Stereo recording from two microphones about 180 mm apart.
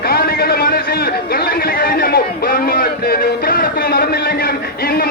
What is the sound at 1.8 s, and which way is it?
Music, 55° left (ahead or behind).